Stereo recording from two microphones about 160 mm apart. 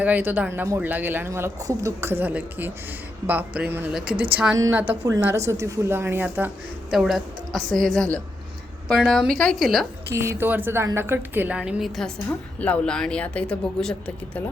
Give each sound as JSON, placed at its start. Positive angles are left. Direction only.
{"t": 0.0, "sound": "a woman's voice", "side_deg": -10}
{"t": 10.1, "sound": "speech", "side_deg": -15}